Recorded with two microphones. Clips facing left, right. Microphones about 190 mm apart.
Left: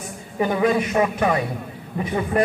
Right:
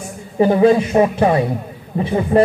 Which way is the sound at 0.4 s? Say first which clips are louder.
Right 7 dB; 30° right (ahead or behind).